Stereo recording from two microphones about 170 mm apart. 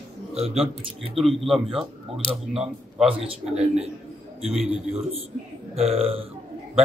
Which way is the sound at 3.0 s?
35° right (ahead or behind).